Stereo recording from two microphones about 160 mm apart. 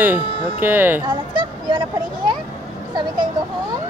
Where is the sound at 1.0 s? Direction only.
30° right (ahead or behind).